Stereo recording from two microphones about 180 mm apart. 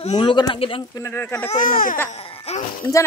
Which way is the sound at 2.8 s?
20° left (ahead or behind).